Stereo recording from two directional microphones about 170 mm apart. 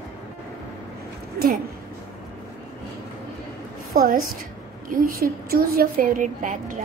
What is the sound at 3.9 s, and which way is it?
A woman's voice, 55° right (ahead or behind).